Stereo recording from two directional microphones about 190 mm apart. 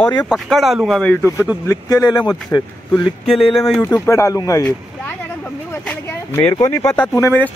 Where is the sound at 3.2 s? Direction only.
Centre (ahead or behind).